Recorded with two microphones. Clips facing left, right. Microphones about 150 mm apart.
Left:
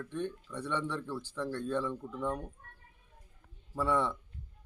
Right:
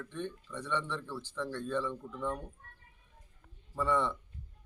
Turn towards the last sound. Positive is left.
turn(degrees=10)  # may be behind; listen again after turning